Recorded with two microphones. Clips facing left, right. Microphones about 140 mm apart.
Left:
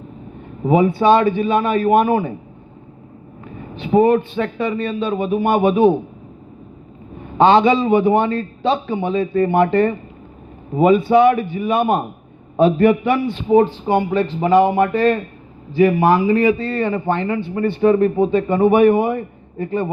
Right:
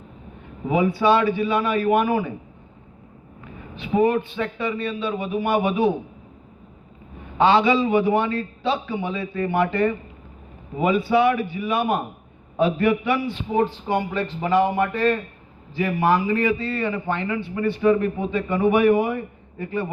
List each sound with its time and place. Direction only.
0.6 s a man's voice: 25° left (ahead or behind)
3.4 s a sound: 30° left (ahead or behind)
4.4 s speech: 50° left (ahead or behind)
5.2 s a man's voice: 30° left (ahead or behind)
7.3 s a man's voice: 25° left (ahead or behind)